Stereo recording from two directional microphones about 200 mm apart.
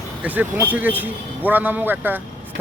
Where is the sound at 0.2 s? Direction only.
10° right (ahead or behind).